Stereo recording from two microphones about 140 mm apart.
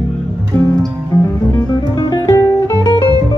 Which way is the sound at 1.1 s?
20° left (ahead or behind).